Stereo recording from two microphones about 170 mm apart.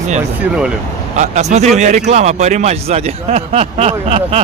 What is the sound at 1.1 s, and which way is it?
Speech, 45° right (ahead or behind).